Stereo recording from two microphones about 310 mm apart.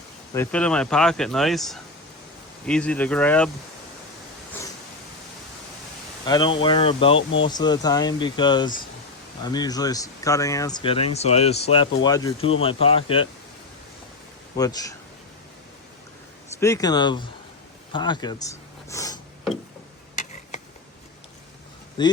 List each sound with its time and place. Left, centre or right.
0.3 s speech: centre
6.2 s speech: centre
7.2 s speech: left
7.4 s speech: centre
14.5 s speech: centre
16.6 s speech: centre
22.0 s speech: centre